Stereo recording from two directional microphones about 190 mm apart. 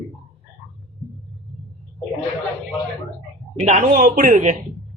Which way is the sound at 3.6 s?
45° right (ahead or behind).